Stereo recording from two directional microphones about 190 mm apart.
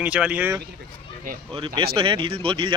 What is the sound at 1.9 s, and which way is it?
Speech, 25° right (ahead or behind).